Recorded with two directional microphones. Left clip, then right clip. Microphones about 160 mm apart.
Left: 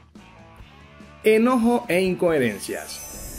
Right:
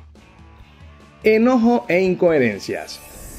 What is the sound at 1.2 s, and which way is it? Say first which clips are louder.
Speech: right 3 dB; 40° right (ahead or behind).